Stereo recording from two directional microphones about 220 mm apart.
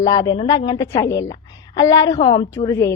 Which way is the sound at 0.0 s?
15° left (ahead or behind).